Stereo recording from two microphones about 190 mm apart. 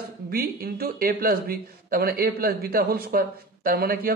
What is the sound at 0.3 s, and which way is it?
A man's voice, 50° right (ahead or behind).